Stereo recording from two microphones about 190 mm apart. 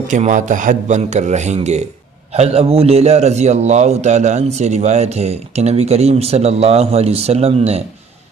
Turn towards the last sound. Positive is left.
turn(degrees=-30)  # may be behind; listen again after turning